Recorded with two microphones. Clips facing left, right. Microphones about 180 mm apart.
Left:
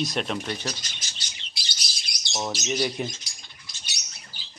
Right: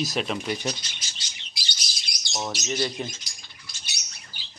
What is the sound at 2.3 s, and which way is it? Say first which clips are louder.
Speech: left 1 dB; 5° left (ahead or behind).